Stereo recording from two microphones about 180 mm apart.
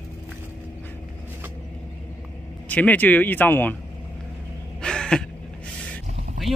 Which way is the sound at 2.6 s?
10° left (ahead or behind).